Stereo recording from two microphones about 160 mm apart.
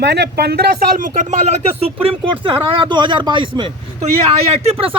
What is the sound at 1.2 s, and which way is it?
Speech, 45° right (ahead or behind).